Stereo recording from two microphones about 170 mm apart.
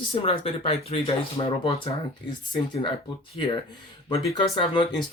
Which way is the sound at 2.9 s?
30° left (ahead or behind).